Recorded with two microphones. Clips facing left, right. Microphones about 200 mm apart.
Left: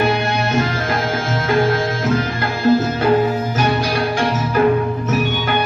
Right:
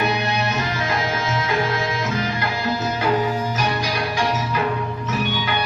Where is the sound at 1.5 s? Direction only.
50° left (ahead or behind).